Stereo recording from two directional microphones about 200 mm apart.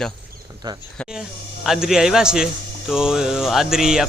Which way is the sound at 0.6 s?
20° right (ahead or behind).